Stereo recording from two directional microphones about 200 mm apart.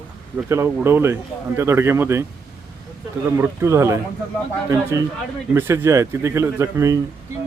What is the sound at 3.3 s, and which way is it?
Speech, 10° right (ahead or behind).